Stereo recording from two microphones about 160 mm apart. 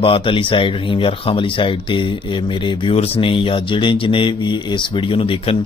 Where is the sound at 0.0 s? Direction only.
35° left (ahead or behind).